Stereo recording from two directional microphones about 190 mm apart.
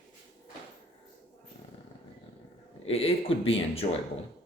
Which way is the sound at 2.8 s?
30° left (ahead or behind).